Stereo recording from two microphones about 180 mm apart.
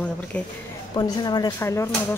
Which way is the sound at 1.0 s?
25° left (ahead or behind).